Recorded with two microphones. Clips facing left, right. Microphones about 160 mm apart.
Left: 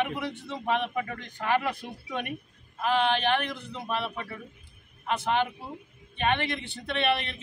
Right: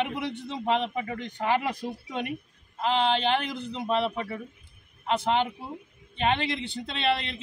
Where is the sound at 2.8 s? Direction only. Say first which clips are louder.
Right 1 dB; 25° right (ahead or behind).